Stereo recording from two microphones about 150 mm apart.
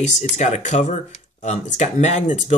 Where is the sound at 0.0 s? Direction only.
50° left (ahead or behind).